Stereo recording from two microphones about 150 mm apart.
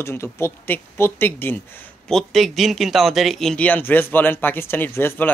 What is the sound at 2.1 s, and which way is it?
Speech, 5° left (ahead or behind).